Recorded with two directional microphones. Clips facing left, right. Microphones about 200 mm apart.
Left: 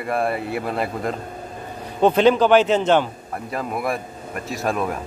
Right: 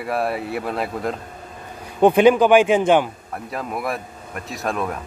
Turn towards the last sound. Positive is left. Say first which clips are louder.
# left 2 dB
turn(degrees=0)  # may be behind; listen again after turning